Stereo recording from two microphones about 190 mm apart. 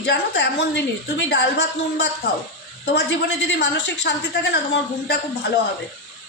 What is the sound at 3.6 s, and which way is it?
A woman's voice, 65° left (ahead or behind).